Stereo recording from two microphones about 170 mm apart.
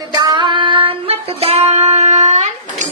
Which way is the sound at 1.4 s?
35° right (ahead or behind).